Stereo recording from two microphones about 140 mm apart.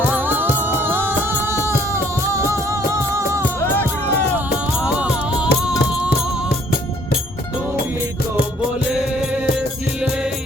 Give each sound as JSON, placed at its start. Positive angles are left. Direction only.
{"t": 0.1, "sound": "music", "side_deg": -15}
{"t": 3.8, "sound": "music", "side_deg": 15}
{"t": 4.8, "sound": "music", "side_deg": -5}